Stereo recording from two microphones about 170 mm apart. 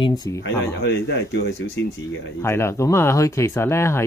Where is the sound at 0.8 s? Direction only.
85° left.